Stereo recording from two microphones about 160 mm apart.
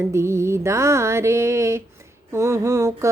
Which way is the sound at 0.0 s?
15° right (ahead or behind).